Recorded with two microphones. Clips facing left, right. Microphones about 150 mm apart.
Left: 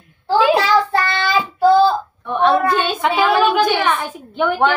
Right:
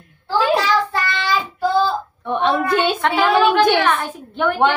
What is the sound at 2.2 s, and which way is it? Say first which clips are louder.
Child singing: left 3 dB; 20° right (ahead or behind).